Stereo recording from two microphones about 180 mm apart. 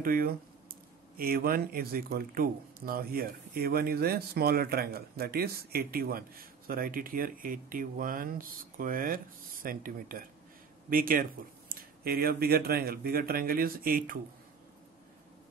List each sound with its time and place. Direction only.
0.0 s speech: 55° right (ahead or behind)